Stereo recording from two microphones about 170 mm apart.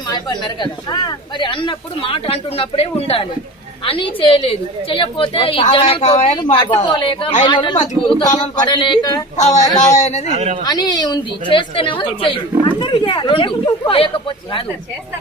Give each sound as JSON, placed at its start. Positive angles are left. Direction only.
{"t": 0.1, "sound": "a woman's voice", "side_deg": 25}
{"t": 9.4, "sound": "speech", "side_deg": 40}
{"t": 10.3, "sound": "speech", "side_deg": -40}
{"t": 10.6, "sound": "a woman's voice", "side_deg": 25}